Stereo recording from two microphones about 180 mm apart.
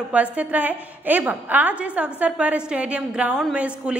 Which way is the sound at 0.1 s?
10° right (ahead or behind).